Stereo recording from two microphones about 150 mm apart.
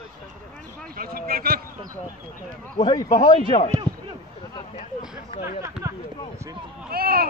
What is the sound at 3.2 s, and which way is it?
Speech, 60° left (ahead or behind).